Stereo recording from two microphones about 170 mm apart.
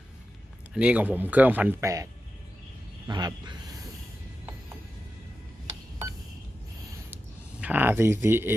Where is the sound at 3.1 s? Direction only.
25° right (ahead or behind).